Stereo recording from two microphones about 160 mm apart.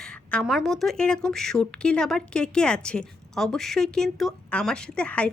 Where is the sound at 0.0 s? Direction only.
5° left (ahead or behind).